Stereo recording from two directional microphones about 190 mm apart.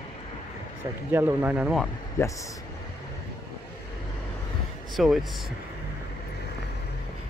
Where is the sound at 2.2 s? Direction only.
15° left (ahead or behind).